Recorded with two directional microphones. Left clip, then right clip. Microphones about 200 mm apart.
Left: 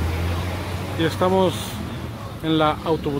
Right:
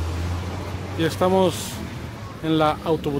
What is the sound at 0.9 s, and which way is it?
Speech, 15° right (ahead or behind).